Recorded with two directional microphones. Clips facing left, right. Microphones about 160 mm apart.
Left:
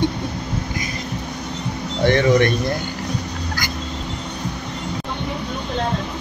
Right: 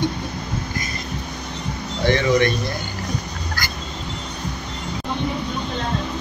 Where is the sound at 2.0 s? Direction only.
55° left (ahead or behind).